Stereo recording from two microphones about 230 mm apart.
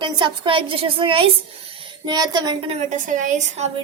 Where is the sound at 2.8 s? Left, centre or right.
Right.